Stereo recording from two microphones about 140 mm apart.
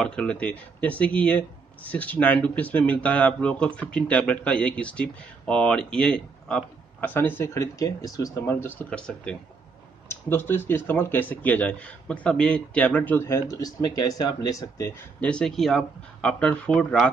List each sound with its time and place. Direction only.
0.0 s speech: 5° left (ahead or behind); by 15.0 s 25° left (ahead or behind)
15.1 s speech: 10° left (ahead or behind)